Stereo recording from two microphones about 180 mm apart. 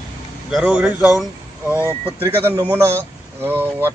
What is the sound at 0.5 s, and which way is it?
Speech, 5° right (ahead or behind).